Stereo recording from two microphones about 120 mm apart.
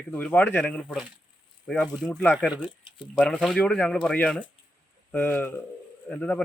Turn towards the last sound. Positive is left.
turn(degrees=10)  # may be behind; listen again after turning